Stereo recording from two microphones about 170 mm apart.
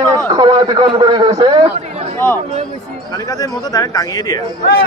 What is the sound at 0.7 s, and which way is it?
Speech, 25° right (ahead or behind).